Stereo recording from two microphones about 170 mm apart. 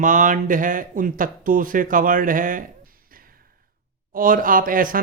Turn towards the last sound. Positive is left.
turn(degrees=-55)  # may be behind; listen again after turning